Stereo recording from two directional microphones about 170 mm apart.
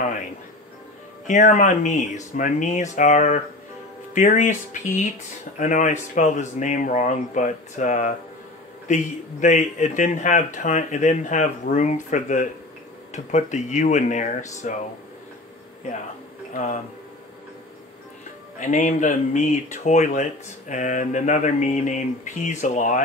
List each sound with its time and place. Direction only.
1.2 s speech: 45° left (ahead or behind)
18.6 s speech: 50° left (ahead or behind)